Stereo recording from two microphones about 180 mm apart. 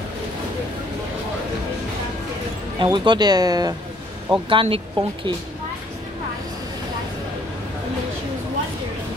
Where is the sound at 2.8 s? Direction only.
25° right (ahead or behind).